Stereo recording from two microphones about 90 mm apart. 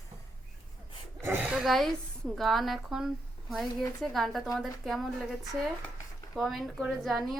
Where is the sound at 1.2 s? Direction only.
25° right (ahead or behind).